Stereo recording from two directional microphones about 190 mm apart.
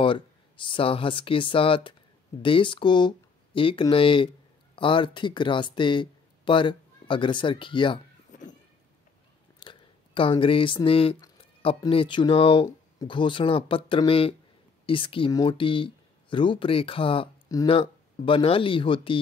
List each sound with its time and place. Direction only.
0.0 s speech: 25° left (ahead or behind)
8.3 s a sound: 40° left (ahead or behind)
9.6 s speech: 25° left (ahead or behind)